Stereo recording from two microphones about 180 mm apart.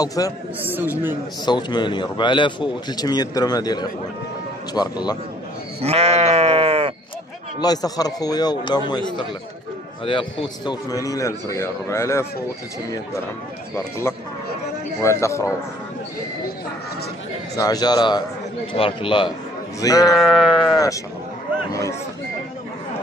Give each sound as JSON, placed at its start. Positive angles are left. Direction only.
{"t": 0.0, "sound": "a man's voice", "side_deg": 20}
{"t": 0.7, "sound": "speech", "side_deg": -10}
{"t": 1.4, "sound": "a man's voice", "side_deg": 25}
{"t": 5.8, "sound": "sheep", "side_deg": -35}
{"t": 7.6, "sound": "a man's voice", "side_deg": 20}
{"t": 10.0, "sound": "a man's voice", "side_deg": 30}
{"t": 13.7, "sound": "a man's voice", "side_deg": 15}
{"t": 17.6, "sound": "a man's voice", "side_deg": 20}
{"t": 20.2, "sound": "sheep", "side_deg": -5}
{"t": 20.7, "sound": "a man's voice", "side_deg": 20}